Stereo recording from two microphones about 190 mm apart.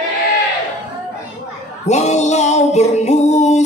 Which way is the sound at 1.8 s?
35° left (ahead or behind).